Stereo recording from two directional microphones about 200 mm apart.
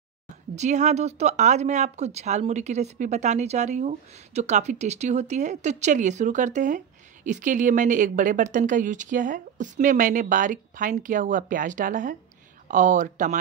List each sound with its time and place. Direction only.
0.6 s speech: 35° right (ahead or behind)